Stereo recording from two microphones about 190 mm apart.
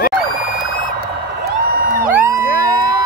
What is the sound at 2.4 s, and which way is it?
Music, 55° left (ahead or behind).